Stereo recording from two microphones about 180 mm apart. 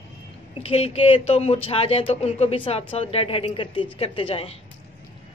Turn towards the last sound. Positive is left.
turn(degrees=30)  # may be behind; listen again after turning